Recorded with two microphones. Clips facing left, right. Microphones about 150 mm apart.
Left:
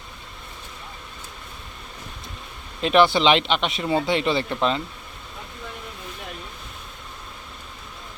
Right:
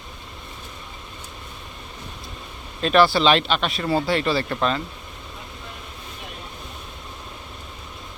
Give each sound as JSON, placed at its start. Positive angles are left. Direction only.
{"t": 2.8, "sound": "speech", "side_deg": 20}